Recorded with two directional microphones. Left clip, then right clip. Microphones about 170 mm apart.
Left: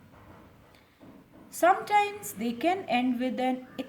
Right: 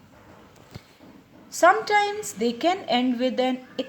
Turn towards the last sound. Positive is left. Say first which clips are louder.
# right 5 dB
turn(degrees=-30)  # may be behind; listen again after turning